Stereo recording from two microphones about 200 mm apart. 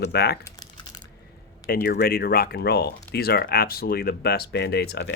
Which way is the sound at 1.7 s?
50° left (ahead or behind).